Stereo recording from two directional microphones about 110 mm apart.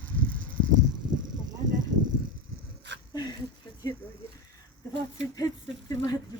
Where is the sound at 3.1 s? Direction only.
40° left (ahead or behind).